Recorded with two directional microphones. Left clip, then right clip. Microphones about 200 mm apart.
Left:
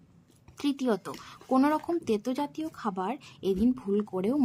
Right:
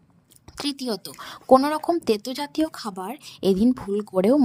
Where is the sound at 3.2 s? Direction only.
45° right (ahead or behind).